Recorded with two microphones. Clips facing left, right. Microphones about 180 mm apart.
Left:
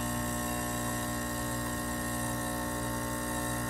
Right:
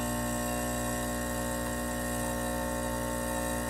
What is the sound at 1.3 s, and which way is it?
Mains hum, 25° right (ahead or behind).